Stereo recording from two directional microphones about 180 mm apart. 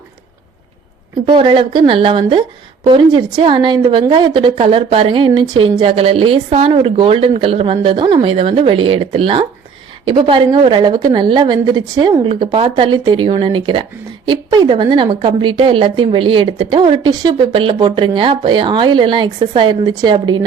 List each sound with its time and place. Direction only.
1.3 s a woman's voice: 30° right (ahead or behind)